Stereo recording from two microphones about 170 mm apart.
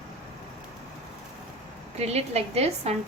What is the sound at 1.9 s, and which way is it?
A woman's voice, 40° right (ahead or behind).